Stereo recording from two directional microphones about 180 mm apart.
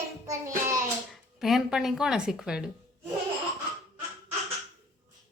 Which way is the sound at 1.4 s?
Centre (ahead or behind).